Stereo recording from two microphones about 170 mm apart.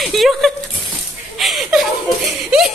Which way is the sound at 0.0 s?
Centre (ahead or behind).